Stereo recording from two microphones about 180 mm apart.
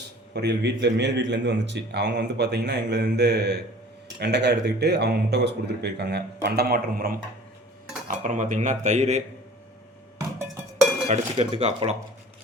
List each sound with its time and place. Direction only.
0.3 s a man's voice: 70° right (ahead or behind); by 7.2 s 55° right (ahead or behind)
8.0 s cutlery: 45° right (ahead or behind)
10.2 s music: 15° right (ahead or behind)
11.1 s speech: 35° right (ahead or behind)